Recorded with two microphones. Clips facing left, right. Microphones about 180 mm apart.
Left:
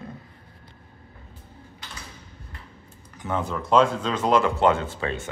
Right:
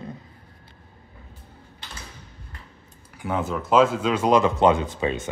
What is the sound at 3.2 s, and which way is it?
Speech, 5° right (ahead or behind).